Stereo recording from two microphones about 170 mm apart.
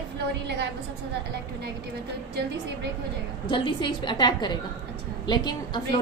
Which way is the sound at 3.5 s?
30° left (ahead or behind).